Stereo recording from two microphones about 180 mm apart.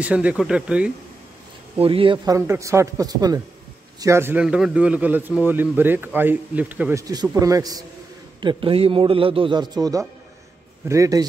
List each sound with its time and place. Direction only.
0.0 s speech: 5° right (ahead or behind)
1.8 s a man's voice: 30° right (ahead or behind)
2.3 s a man's voice: 15° right (ahead or behind)